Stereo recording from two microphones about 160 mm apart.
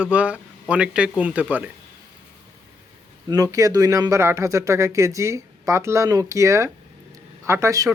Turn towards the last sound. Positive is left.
turn(degrees=-20)  # may be behind; listen again after turning